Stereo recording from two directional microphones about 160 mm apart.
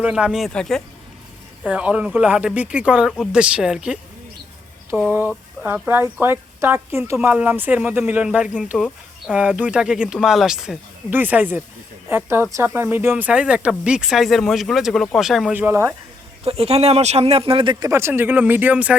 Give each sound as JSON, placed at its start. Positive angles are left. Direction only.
{"t": 0.0, "sound": "speech", "side_deg": -5}
{"t": 1.6, "sound": "speech", "side_deg": -5}
{"t": 4.9, "sound": "speech", "side_deg": -10}
{"t": 15.5, "sound": "speech", "side_deg": -15}
{"t": 16.4, "sound": "speech", "side_deg": -40}